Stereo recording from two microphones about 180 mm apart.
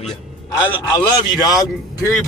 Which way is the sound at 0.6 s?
20° left (ahead or behind).